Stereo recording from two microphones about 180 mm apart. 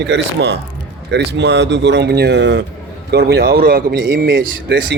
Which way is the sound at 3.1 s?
65° right (ahead or behind).